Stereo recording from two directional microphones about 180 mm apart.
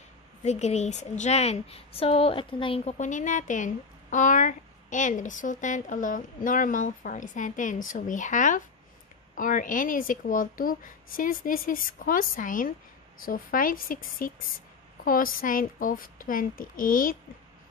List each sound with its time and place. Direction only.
0.4 s a woman's voice: 40° left (ahead or behind)